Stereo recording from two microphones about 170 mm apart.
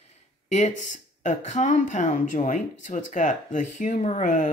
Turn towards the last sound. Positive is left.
turn(degrees=50)  # may be behind; listen again after turning